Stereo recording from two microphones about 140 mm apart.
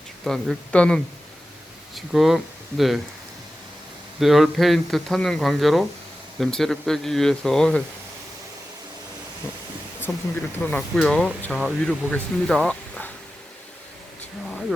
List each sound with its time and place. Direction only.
0.3 s speech: 5° left (ahead or behind)
4.2 s speech: centre (ahead or behind)
10.1 s speech: 20° left (ahead or behind)